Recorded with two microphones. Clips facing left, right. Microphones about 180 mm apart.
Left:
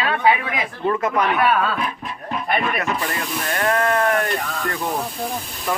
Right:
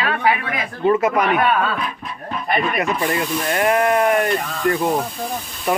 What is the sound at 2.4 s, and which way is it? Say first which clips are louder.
Speech: right 2 dB; centre (ahead or behind).